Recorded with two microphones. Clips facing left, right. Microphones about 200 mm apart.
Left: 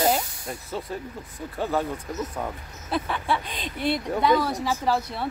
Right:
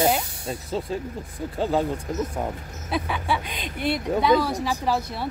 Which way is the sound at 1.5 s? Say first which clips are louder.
Right 3 dB; 15° right (ahead or behind).